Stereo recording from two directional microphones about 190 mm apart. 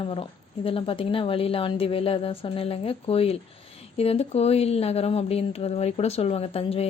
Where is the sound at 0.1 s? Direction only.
30° left (ahead or behind).